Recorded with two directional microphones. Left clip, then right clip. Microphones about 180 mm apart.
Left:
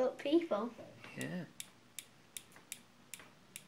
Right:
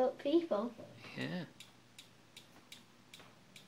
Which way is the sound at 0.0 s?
5° left (ahead or behind).